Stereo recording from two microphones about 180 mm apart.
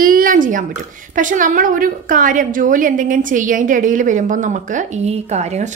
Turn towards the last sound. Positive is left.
turn(degrees=-40)  # may be behind; listen again after turning